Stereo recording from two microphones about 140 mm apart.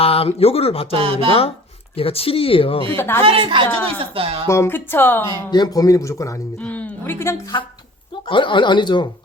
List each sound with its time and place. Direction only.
0.0 s speech: 45° left (ahead or behind)
0.9 s speech: 40° right (ahead or behind)
1.3 s speech: 45° left (ahead or behind)
2.9 s speech: 15° left (ahead or behind)
3.2 s a woman's voice: 40° right (ahead or behind)
4.4 s speech: 20° left (ahead or behind)
5.5 s speech: 30° left (ahead or behind)
6.6 s speech: 10° left (ahead or behind)
7.5 s speech: 35° left (ahead or behind)